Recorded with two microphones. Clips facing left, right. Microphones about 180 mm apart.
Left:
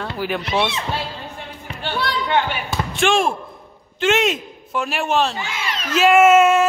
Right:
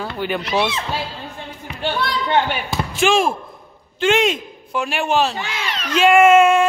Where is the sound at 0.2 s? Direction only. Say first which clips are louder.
Right 1 dB; centre (ahead or behind).